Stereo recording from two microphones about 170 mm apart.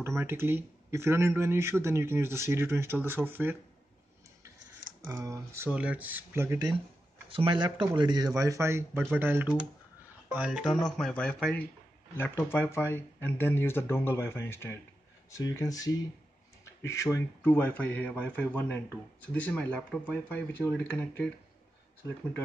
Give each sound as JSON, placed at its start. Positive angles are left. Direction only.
{"t": 0.2, "sound": "speech", "side_deg": -15}
{"t": 5.0, "sound": "speech", "side_deg": -15}
{"t": 7.2, "sound": "speech", "side_deg": -30}